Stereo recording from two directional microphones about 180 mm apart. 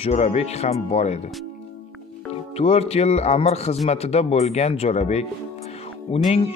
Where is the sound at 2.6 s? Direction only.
35° left (ahead or behind).